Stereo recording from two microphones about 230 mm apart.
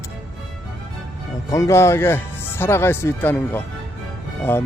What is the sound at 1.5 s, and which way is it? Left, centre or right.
Speech, centre.